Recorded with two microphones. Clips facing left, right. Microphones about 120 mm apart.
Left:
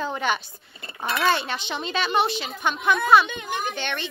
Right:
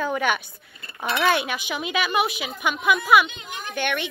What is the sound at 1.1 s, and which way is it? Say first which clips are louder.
Speech: right 1 dB; 10° right (ahead or behind).